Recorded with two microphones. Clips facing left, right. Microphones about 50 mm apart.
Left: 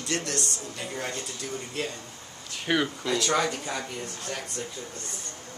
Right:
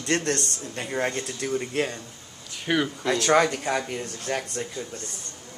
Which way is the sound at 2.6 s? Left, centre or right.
Centre.